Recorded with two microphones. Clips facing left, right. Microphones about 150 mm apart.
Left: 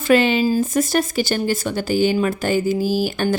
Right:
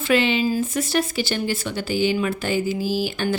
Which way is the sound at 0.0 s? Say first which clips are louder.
Left 4 dB; 45° left (ahead or behind).